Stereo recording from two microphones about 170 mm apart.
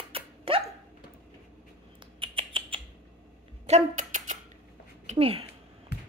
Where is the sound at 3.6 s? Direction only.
45° right (ahead or behind).